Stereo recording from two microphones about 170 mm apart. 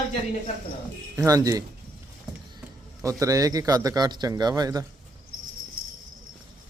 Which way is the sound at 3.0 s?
20° right (ahead or behind).